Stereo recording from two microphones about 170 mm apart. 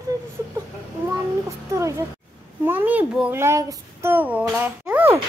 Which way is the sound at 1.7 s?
15° right (ahead or behind).